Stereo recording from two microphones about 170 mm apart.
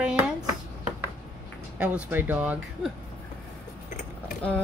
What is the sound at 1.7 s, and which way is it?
Speech, 5° right (ahead or behind).